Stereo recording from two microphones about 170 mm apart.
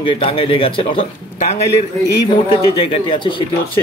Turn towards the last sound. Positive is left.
turn(degrees=30)  # may be behind; listen again after turning